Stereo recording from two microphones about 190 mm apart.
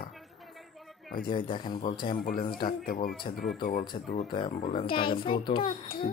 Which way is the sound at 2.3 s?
50° left (ahead or behind).